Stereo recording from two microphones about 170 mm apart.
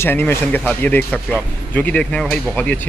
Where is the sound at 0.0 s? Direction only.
15° left (ahead or behind).